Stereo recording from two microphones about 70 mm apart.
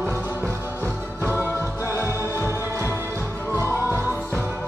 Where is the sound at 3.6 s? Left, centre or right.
Right.